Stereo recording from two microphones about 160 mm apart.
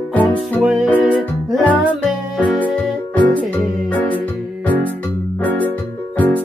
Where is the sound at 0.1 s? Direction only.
10° left (ahead or behind).